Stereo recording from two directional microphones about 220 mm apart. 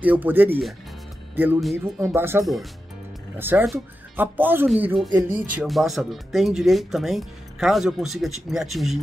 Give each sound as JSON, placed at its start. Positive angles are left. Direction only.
{"t": 0.0, "sound": "speech", "side_deg": -10}